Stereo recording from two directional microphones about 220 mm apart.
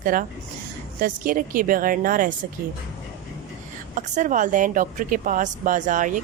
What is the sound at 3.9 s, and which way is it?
Speech, 35° right (ahead or behind).